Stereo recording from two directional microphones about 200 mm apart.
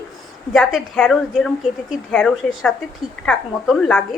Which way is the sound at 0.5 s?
5° left (ahead or behind).